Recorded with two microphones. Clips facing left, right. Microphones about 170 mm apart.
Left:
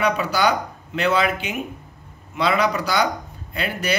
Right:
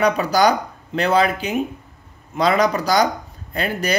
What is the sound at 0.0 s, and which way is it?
Speech, 40° right (ahead or behind).